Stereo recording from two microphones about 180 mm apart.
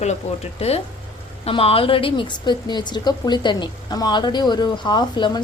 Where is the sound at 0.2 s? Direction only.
35° left (ahead or behind).